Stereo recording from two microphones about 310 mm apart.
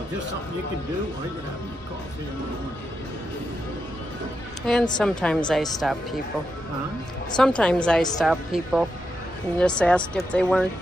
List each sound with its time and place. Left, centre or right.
4.7 s a woman's voice: centre
7.3 s a woman's voice: centre